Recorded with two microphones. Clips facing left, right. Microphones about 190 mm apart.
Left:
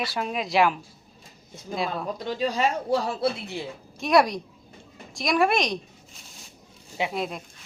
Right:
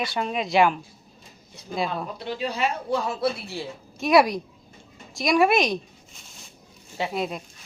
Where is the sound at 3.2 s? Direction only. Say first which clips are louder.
Even; 20° left (ahead or behind).